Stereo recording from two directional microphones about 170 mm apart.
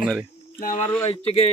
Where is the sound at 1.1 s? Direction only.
35° left (ahead or behind).